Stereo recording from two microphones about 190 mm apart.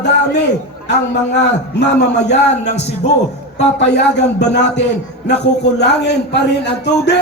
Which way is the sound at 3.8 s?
65° left (ahead or behind).